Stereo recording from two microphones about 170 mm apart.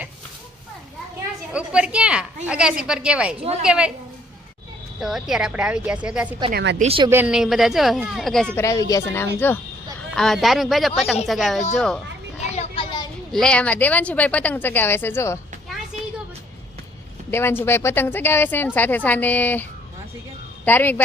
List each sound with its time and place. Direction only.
1.5 s a sound: 5° right (ahead or behind)
2.5 s speech: 5° right (ahead or behind)
4.9 s speech: centre (ahead or behind)
6.5 s a woman's voice: 90° right
6.7 s speech: 40° right (ahead or behind)
7.1 s speech: 10° right (ahead or behind)
8.5 s speech: 20° left (ahead or behind)
10.2 s speech: centre (ahead or behind)
12.4 s children playing: 40° left (ahead or behind)
13.3 s speech: 5° left (ahead or behind)
17.3 s speech: 15° left (ahead or behind)
20.7 s speech: 10° left (ahead or behind)